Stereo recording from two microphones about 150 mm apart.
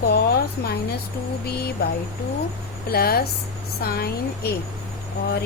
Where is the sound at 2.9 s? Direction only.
90° left.